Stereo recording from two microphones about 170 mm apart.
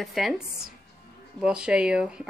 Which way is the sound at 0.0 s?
Centre (ahead or behind).